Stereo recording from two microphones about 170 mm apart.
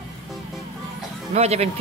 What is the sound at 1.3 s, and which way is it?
Speech, 40° right (ahead or behind).